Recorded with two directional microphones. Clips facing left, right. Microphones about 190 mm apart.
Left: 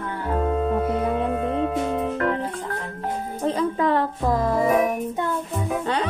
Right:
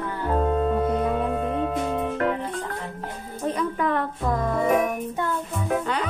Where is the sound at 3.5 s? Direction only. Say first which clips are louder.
Left 3 dB; 30° left (ahead or behind).